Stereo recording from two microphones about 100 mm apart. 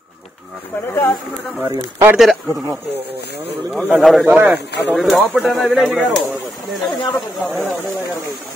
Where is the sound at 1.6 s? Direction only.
25° right (ahead or behind).